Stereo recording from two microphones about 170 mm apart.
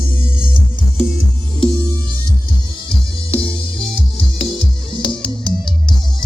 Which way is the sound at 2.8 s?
20° right (ahead or behind).